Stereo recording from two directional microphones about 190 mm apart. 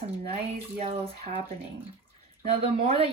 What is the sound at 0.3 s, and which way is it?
A woman's voice, 35° right (ahead or behind).